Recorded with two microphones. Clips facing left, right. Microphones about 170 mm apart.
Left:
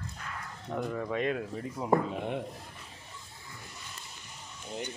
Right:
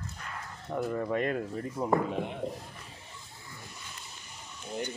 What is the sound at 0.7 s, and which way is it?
Speech, 5° right (ahead or behind).